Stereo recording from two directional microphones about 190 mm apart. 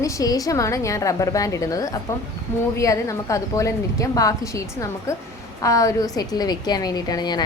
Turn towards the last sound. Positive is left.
turn(degrees=20)  # may be behind; listen again after turning